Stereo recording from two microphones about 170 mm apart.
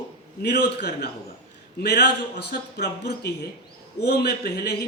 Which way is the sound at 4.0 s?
70° left (ahead or behind).